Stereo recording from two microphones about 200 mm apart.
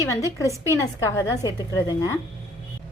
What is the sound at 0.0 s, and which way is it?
A woman's voice, 15° left (ahead or behind).